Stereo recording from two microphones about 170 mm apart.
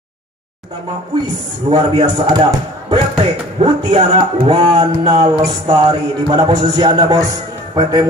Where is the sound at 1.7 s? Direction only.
25° right (ahead or behind).